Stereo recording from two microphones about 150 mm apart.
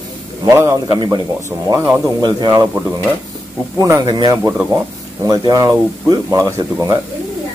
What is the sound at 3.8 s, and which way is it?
Speech, 25° right (ahead or behind).